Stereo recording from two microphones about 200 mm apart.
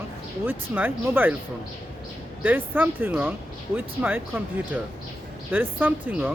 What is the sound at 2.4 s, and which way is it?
Speech, 10° right (ahead or behind).